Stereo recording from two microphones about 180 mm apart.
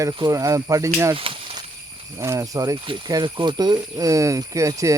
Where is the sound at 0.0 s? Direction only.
20° right (ahead or behind).